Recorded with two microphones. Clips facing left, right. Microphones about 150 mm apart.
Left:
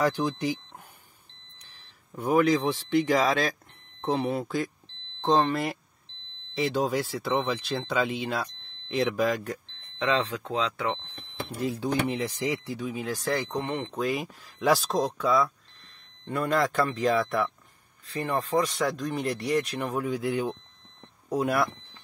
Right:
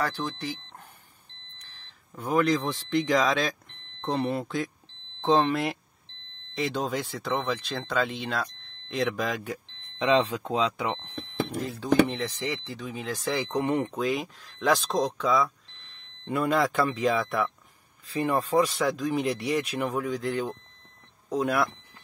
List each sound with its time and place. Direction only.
0.0 s speech: 15° left (ahead or behind)
1.7 s a man's voice: 10° left (ahead or behind)
9.9 s speech: 15° right (ahead or behind)
11.6 s speech: 10° left (ahead or behind)
13.6 s speech: 15° right (ahead or behind)
13.9 s speech: centre (ahead or behind)
20.1 s speech: 10° left (ahead or behind)